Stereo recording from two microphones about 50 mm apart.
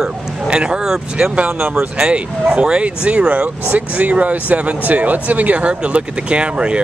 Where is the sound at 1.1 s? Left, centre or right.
Right.